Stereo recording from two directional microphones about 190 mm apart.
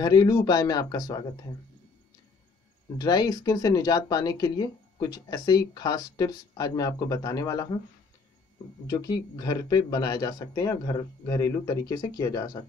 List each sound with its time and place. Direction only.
0.0 s speech: 20° left (ahead or behind)
3.0 s speech: 20° left (ahead or behind)
8.8 s speech: 20° left (ahead or behind)